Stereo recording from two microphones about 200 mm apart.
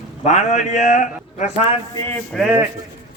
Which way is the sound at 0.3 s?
35° left (ahead or behind).